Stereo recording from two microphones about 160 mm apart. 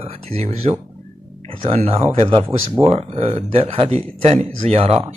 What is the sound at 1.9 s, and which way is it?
Speech, 35° right (ahead or behind).